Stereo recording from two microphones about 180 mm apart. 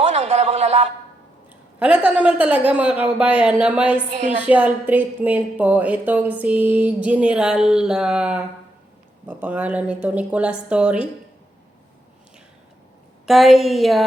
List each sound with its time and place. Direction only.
0.1 s a sound: 35° right (ahead or behind)
1.8 s a woman's voice: 5° right (ahead or behind)
4.1 s a woman's voice: 40° right (ahead or behind)
4.4 s a woman's voice: 5° right (ahead or behind)
13.2 s a woman's voice: centre (ahead or behind)